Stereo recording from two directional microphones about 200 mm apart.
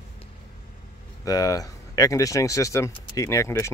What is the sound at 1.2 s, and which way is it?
Speech, 20° left (ahead or behind).